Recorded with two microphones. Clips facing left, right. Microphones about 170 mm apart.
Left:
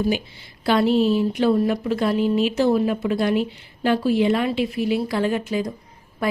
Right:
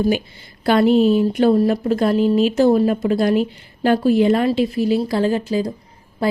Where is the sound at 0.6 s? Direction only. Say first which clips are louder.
Right 4 dB; 50° right (ahead or behind).